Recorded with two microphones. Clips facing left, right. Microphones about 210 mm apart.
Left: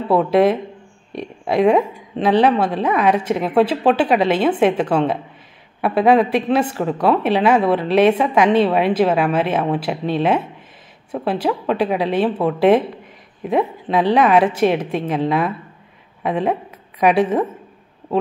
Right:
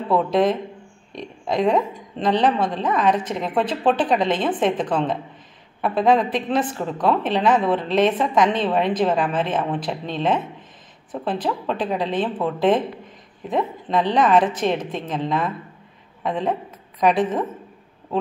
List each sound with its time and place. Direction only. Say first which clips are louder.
0.1 s a woman's voice: left 4 dB; 10° left (ahead or behind)
1.6 s a woman's voice: left 5 dB; 10° left (ahead or behind)
5.8 s a woman's voice: left 4 dB; 65° left (ahead or behind)
6.0 s a woman's voice: left 4 dB; 10° left (ahead or behind)